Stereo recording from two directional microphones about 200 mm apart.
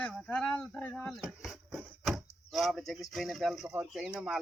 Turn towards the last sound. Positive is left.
turn(degrees=-5)  # may be behind; listen again after turning